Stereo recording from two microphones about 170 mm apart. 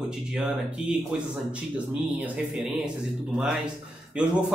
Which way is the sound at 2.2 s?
5° right (ahead or behind).